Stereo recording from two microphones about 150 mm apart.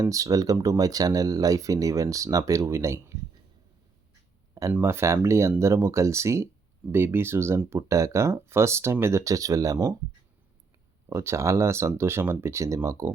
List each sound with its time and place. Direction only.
0.0 s speech: 20° right (ahead or behind)
4.7 s speech: 15° right (ahead or behind)
11.1 s speech: 20° right (ahead or behind)